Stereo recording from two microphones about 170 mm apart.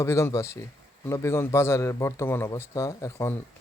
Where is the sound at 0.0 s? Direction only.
15° left (ahead or behind).